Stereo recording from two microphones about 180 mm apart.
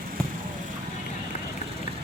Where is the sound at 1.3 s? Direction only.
35° left (ahead or behind).